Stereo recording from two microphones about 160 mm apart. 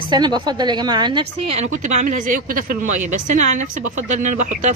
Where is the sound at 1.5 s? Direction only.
45° right (ahead or behind).